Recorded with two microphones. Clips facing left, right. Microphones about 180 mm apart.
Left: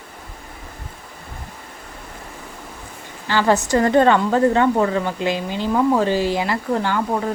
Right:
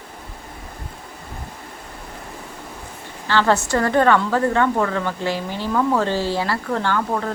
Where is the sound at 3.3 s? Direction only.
15° left (ahead or behind).